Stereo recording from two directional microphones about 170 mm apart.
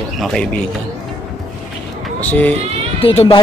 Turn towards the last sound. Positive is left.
turn(degrees=35)  # may be behind; listen again after turning